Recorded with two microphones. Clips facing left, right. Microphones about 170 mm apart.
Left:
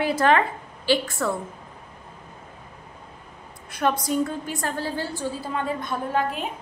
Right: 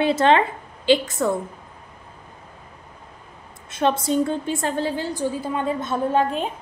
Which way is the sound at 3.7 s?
25° right (ahead or behind).